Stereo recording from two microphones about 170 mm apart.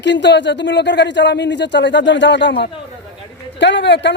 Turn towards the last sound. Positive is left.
turn(degrees=90)